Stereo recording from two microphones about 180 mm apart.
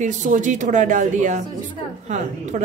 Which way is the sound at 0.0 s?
45° right (ahead or behind).